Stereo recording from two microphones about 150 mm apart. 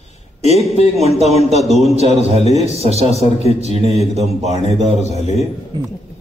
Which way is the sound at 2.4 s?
45° left (ahead or behind).